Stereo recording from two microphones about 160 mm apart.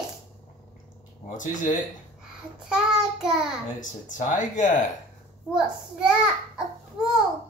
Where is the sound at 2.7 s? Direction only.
5° right (ahead or behind).